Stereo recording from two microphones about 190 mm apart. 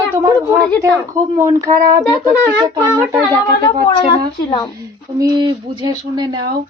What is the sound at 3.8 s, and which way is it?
Speech, 25° left (ahead or behind).